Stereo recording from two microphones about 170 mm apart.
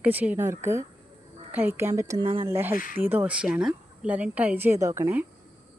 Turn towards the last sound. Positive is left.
turn(degrees=-15)  # may be behind; listen again after turning